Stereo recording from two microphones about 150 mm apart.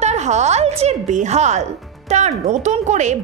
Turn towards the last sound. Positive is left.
turn(degrees=-50)  # may be behind; listen again after turning